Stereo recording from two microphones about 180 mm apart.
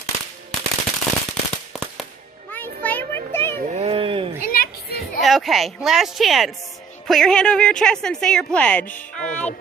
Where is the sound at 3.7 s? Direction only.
35° right (ahead or behind).